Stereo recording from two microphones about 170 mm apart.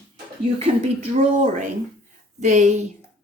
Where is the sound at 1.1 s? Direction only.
45° right (ahead or behind).